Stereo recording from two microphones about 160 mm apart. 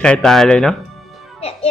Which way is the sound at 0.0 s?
5° left (ahead or behind).